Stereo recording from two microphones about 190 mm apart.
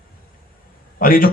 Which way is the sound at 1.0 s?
50° left (ahead or behind).